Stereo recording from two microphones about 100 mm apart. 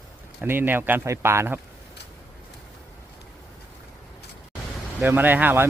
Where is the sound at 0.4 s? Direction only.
20° right (ahead or behind).